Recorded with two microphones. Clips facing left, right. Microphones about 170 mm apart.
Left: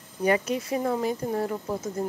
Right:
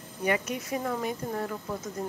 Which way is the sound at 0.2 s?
30° left (ahead or behind).